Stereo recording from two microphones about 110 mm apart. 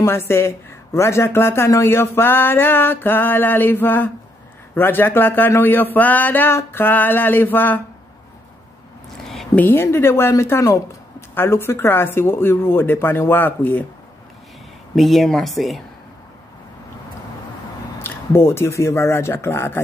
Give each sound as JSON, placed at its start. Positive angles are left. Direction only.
{"t": 0.0, "sound": "a woman's voice", "side_deg": 20}
{"t": 9.6, "sound": "a woman's voice", "side_deg": 20}
{"t": 15.0, "sound": "speech", "side_deg": 0}
{"t": 17.9, "sound": "speech", "side_deg": 20}